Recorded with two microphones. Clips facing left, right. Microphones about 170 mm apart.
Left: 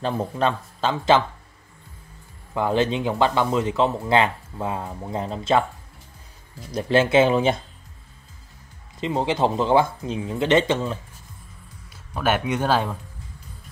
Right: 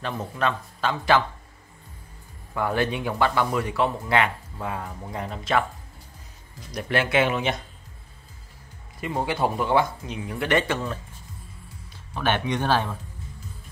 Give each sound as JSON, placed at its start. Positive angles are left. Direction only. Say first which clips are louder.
{"t": 0.0, "sound": "speech", "louder": "left 4 dB", "side_deg": 30}
{"t": 2.5, "sound": "speech", "louder": "left 4 dB", "side_deg": 20}
{"t": 6.7, "sound": "speech", "louder": "left 6 dB", "side_deg": 25}
{"t": 9.0, "sound": "speech", "louder": "left 3 dB", "side_deg": 20}
{"t": 12.1, "sound": "speech", "louder": "left 2 dB", "side_deg": 10}